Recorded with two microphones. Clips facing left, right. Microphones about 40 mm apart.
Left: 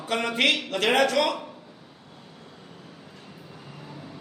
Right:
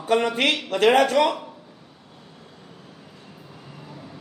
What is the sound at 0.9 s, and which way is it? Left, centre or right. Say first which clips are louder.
Speech: right 4 dB; right.